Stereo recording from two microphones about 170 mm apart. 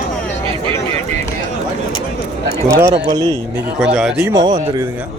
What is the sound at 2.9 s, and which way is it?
Speech, 25° right (ahead or behind).